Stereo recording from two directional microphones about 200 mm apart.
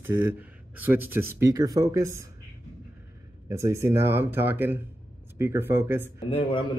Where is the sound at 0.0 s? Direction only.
10° right (ahead or behind).